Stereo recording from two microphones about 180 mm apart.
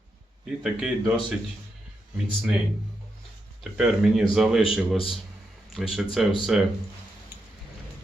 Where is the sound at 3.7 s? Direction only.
5° right (ahead or behind).